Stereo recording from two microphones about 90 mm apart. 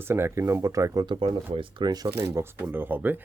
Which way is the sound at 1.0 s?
65° right (ahead or behind).